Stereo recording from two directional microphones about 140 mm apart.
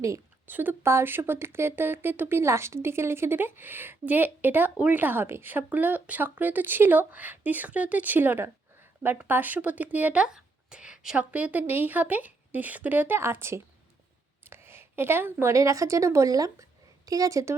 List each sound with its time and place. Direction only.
0.0 s a woman's voice: 20° right (ahead or behind)